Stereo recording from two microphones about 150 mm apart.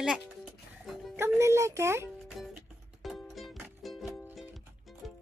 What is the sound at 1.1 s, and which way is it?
Speech, 20° right (ahead or behind).